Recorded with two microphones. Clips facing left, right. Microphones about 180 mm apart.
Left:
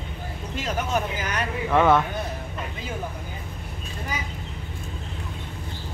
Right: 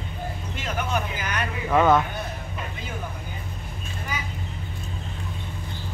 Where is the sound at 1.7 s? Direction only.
10° right (ahead or behind).